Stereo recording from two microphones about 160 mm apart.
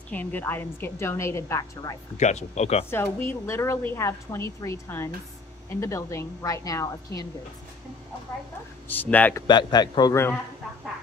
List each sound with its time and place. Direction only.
0.1 s a woman's voice: 10° left (ahead or behind)
2.1 s speech: 45° left (ahead or behind)
2.9 s a woman's voice: 15° left (ahead or behind)
8.8 s a woman's voice: 10° left (ahead or behind)
9.5 s a woman's voice: 25° left (ahead or behind)